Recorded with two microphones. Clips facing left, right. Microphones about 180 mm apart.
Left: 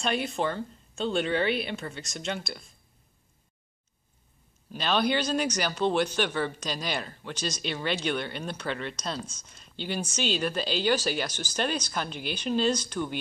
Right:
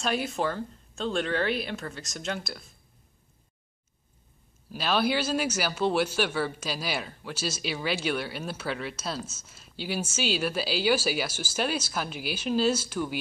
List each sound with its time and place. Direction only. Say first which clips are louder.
0.0 s a man's voice: even; centre (ahead or behind)
4.6 s a man's voice: even; 5° right (ahead or behind)